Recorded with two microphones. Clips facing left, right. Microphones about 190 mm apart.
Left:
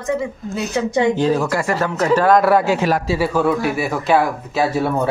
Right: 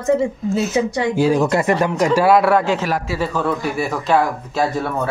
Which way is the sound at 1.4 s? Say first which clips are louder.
Right 3 dB; 20° right (ahead or behind).